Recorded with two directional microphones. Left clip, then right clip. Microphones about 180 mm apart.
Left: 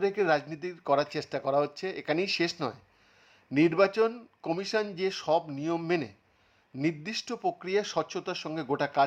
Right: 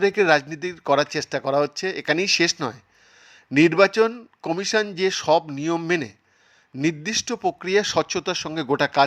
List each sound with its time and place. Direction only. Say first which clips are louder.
0.0 s speech: right 8 dB; 20° right (ahead or behind)